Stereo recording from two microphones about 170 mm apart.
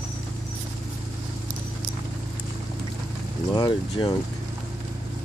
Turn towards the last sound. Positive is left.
turn(degrees=25)  # may be behind; listen again after turning